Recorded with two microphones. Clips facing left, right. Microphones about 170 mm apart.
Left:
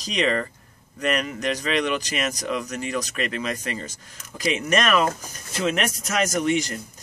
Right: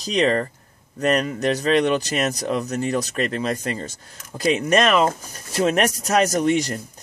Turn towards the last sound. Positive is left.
turn(degrees=-35)  # may be behind; listen again after turning